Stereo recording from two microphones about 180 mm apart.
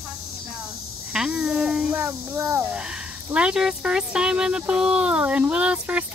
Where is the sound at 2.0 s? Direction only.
15° right (ahead or behind).